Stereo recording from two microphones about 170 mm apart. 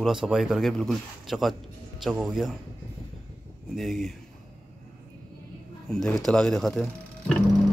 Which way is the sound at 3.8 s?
Centre (ahead or behind).